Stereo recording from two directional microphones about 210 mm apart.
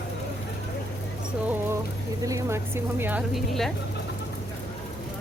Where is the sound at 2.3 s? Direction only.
15° right (ahead or behind).